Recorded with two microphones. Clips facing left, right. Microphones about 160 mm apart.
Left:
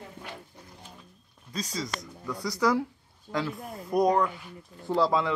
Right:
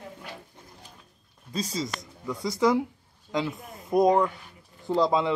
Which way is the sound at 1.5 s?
25° right (ahead or behind).